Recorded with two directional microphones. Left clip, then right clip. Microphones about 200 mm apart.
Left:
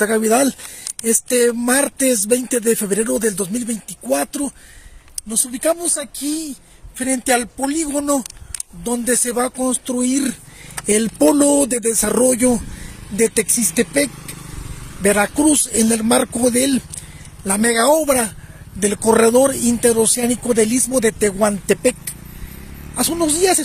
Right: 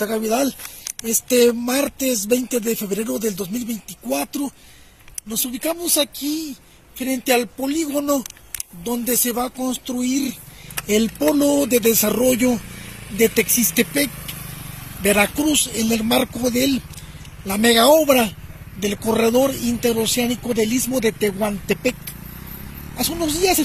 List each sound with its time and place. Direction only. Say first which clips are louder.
0.0 s speech: left 5 dB; 50° left (ahead or behind)
5.6 s speech: left 2 dB; 35° left (ahead or behind)
22.9 s speech: left 4 dB; 45° left (ahead or behind)